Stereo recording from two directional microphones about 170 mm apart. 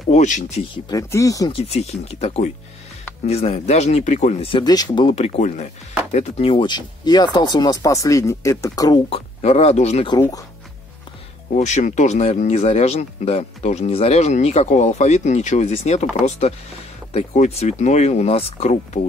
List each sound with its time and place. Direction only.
0.1 s speech: 45° left (ahead or behind)
0.8 s speech: 20° left (ahead or behind)
1.5 s speech: 40° left (ahead or behind)
5.1 s speech: 40° left (ahead or behind); by 9.0 s 20° left (ahead or behind)
9.1 s speech: 40° left (ahead or behind)
11.5 s speech: 45° left (ahead or behind)